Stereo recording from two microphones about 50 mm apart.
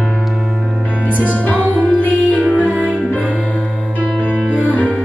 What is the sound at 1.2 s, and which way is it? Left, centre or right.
Music, left.